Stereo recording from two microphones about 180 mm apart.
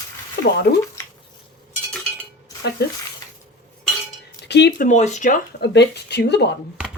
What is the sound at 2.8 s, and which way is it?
Speech, 65° left (ahead or behind).